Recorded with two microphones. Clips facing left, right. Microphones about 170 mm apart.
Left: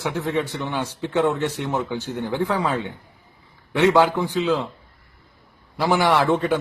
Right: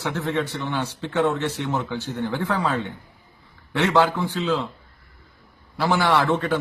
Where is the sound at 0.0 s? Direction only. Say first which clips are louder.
Left 1 dB; 15° left (ahead or behind).